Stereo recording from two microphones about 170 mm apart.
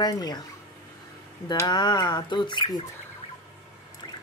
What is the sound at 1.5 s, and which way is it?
Speech, 25° left (ahead or behind).